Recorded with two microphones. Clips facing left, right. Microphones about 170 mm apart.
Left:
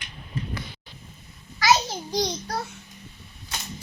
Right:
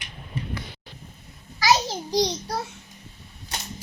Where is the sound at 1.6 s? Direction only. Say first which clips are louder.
Even; 35° right (ahead or behind).